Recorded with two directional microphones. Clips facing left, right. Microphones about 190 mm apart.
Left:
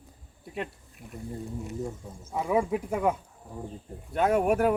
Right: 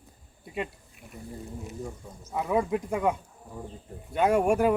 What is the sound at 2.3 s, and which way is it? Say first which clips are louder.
Speech: even; centre (ahead or behind).